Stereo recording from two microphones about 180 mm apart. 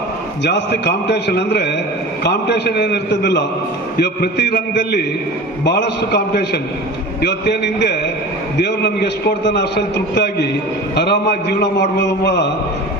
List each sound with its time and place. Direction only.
0.4 s a man's voice: 70° left (ahead or behind)